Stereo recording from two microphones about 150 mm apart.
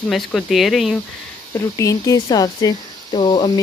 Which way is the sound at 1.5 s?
20° left (ahead or behind).